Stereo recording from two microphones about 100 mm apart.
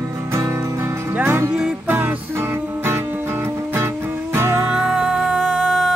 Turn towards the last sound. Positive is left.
turn(degrees=0)  # may be behind; listen again after turning